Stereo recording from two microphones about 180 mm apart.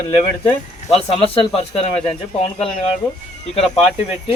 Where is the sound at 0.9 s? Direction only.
35° left (ahead or behind).